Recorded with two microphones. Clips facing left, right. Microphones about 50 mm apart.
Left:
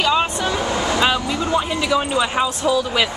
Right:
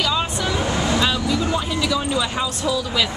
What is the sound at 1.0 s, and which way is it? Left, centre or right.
Speech, left.